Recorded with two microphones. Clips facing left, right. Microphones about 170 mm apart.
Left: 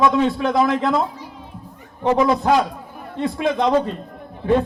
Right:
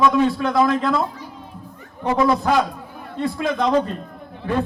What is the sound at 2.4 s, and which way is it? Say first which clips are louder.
A man's voice: left 2 dB; 20° left (ahead or behind).